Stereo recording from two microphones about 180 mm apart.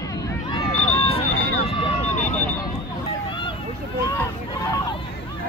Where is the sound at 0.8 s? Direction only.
35° left (ahead or behind).